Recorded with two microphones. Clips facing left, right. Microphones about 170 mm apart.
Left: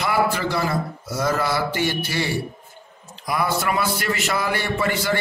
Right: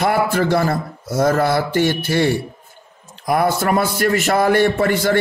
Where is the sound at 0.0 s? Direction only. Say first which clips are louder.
Right 4 dB; 50° right (ahead or behind).